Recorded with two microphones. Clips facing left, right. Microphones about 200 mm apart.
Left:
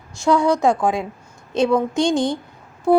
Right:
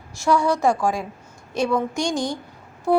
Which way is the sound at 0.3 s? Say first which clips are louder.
Left 3 dB; 20° left (ahead or behind).